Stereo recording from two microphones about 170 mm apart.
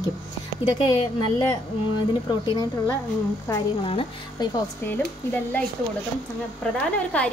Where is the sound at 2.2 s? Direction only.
25° left (ahead or behind).